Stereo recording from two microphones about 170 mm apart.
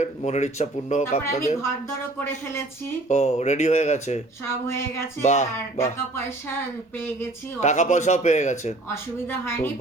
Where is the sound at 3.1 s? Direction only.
40° left (ahead or behind).